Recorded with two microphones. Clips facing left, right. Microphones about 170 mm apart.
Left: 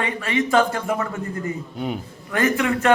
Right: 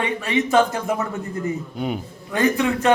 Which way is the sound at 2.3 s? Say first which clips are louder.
Right 1 dB; 15° right (ahead or behind).